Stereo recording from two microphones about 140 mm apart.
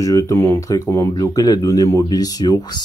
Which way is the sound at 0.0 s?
25° left (ahead or behind).